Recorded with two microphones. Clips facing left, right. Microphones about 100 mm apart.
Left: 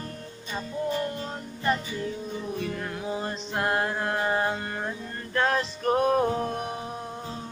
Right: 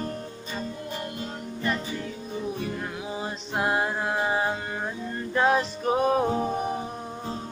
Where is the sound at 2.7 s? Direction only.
5° right (ahead or behind).